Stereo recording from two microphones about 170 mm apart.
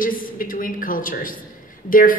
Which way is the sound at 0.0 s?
55° left (ahead or behind).